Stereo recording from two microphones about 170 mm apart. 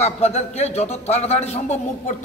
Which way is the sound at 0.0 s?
40° left (ahead or behind).